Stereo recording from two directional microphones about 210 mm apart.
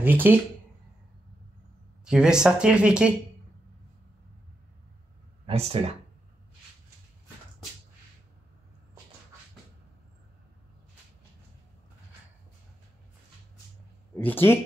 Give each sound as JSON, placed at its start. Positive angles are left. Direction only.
{"t": 0.0, "sound": "speech", "side_deg": -10}
{"t": 2.0, "sound": "speech", "side_deg": -5}
{"t": 5.5, "sound": "speech", "side_deg": -30}
{"t": 14.1, "sound": "speech", "side_deg": 10}